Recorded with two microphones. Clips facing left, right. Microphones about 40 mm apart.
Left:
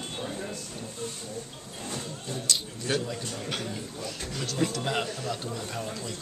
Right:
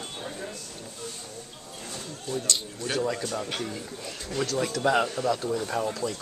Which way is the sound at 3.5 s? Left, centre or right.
Centre.